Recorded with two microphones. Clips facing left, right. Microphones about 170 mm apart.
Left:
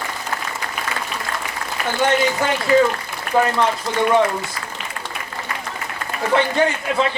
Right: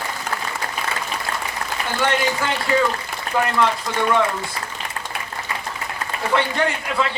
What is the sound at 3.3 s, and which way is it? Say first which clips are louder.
Speech: left 4 dB; 40° left (ahead or behind).